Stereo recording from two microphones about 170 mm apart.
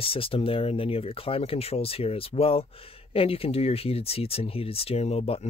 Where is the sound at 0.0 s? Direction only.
35° left (ahead or behind).